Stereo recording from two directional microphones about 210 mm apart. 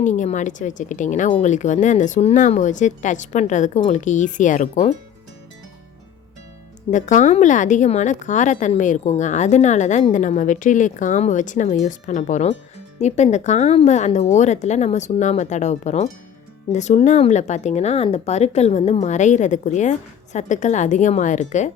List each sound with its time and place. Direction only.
0.0 s a woman's voice: 35° left (ahead or behind)
6.9 s a woman's voice: 35° left (ahead or behind)